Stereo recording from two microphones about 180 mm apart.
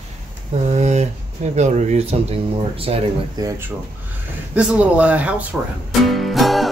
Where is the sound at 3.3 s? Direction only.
20° right (ahead or behind).